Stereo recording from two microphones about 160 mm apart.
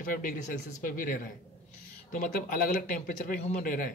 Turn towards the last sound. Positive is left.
turn(degrees=65)  # may be behind; listen again after turning